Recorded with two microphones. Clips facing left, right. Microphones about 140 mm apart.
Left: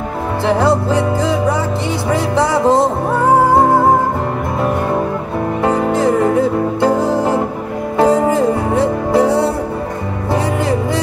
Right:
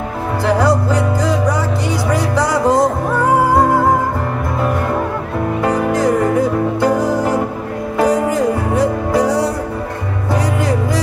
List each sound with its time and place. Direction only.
0.5 s music: 25° left (ahead or behind)
5.6 s music: 25° left (ahead or behind)